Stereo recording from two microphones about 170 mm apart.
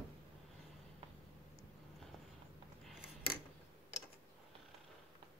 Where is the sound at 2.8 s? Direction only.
Centre (ahead or behind).